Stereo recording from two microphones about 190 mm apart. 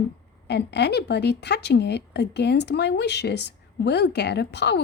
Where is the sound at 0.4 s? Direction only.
60° left (ahead or behind).